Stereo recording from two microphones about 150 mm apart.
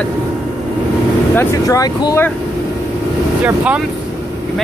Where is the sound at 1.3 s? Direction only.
20° left (ahead or behind).